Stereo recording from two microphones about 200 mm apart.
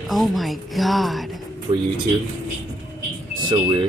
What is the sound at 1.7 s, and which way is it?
Speech, 25° right (ahead or behind).